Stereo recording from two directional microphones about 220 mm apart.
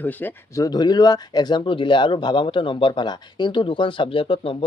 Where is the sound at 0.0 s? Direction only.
10° left (ahead or behind).